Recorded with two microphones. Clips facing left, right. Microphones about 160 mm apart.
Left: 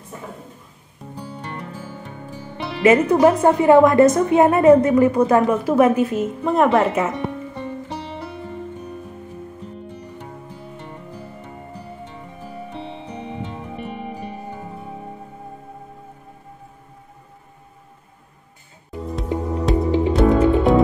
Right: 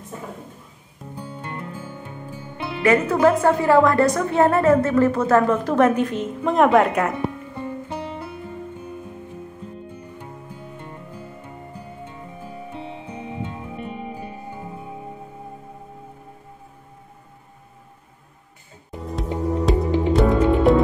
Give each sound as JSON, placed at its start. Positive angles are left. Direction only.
{"t": 2.8, "sound": "a woman's voice", "side_deg": 20}
{"t": 12.4, "sound": "music", "side_deg": -15}
{"t": 19.6, "sound": "music", "side_deg": 0}